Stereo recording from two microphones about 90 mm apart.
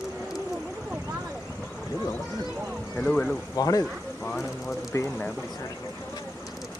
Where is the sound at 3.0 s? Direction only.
10° left (ahead or behind).